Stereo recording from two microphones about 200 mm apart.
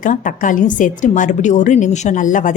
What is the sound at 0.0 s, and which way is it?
A woman's voice, 40° left (ahead or behind).